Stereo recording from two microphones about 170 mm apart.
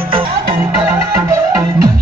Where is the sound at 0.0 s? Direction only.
30° right (ahead or behind).